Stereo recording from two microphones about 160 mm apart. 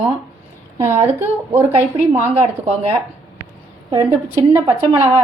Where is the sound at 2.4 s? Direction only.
40° right (ahead or behind).